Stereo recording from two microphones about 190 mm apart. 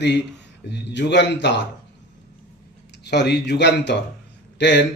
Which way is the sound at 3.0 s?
60° left (ahead or behind).